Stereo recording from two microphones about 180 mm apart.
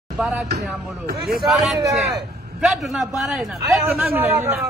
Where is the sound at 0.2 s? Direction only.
10° right (ahead or behind).